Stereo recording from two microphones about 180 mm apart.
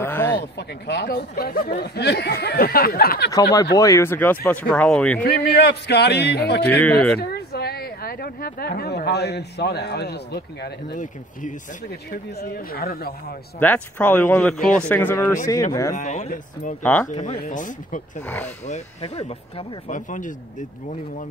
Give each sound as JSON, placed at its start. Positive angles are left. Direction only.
{"t": 0.0, "sound": "a sound", "side_deg": 10}
{"t": 0.6, "sound": "speech", "side_deg": 65}
{"t": 3.7, "sound": "speech", "side_deg": 15}
{"t": 5.2, "sound": "speech", "side_deg": 60}
{"t": 6.7, "sound": "speech", "side_deg": 5}
{"t": 7.2, "sound": "speech", "side_deg": 60}
{"t": 12.1, "sound": "speech", "side_deg": 55}
{"t": 13.6, "sound": "speech", "side_deg": 10}
{"t": 15.9, "sound": "speech", "side_deg": 40}
{"t": 16.8, "sound": "speech", "side_deg": 10}
{"t": 17.1, "sound": "speech", "side_deg": 35}
{"t": 18.2, "sound": "speech", "side_deg": 10}
{"t": 18.7, "sound": "speech", "side_deg": 35}